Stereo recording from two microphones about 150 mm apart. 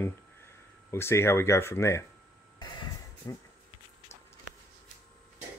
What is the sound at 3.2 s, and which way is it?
Speech, 25° left (ahead or behind).